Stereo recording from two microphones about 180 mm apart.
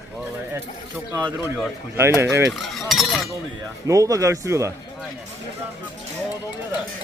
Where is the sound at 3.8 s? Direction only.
20° right (ahead or behind).